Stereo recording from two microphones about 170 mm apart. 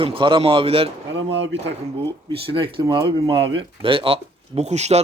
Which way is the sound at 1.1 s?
90° right.